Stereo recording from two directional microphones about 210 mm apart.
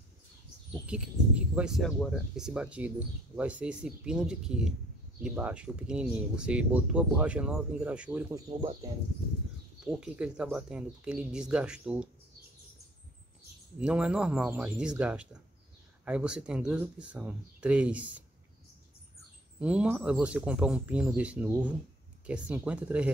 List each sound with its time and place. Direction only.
0.8 s speech: 5° right (ahead or behind)
8.5 s speech: 25° right (ahead or behind)
9.8 s speech: 5° right (ahead or behind)
13.7 s speech: 5° right (ahead or behind)
19.6 s speech: 5° right (ahead or behind)